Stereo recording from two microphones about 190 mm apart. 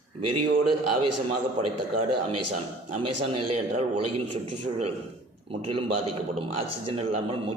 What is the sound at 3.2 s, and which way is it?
Speech, 30° right (ahead or behind).